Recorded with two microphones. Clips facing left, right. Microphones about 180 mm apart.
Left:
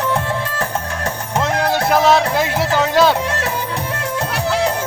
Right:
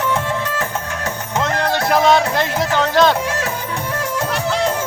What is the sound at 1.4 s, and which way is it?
Music, 5° left (ahead or behind).